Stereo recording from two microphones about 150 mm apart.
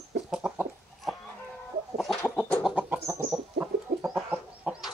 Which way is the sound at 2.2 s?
10° left (ahead or behind).